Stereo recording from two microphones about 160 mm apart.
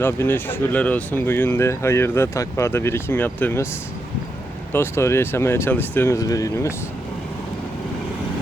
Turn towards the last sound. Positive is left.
turn(degrees=20)  # may be behind; listen again after turning